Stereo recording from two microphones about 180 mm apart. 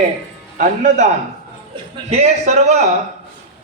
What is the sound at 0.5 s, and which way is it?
A man's voice, 40° right (ahead or behind).